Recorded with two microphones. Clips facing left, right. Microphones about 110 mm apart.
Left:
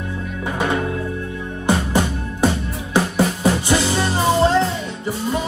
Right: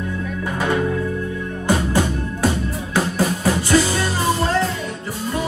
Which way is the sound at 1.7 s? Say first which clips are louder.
Even; 20° left (ahead or behind).